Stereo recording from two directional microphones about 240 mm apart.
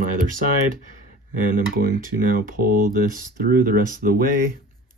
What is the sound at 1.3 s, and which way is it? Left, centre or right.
Speech, right.